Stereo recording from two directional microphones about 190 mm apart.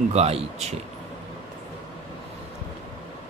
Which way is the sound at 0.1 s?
35° right (ahead or behind).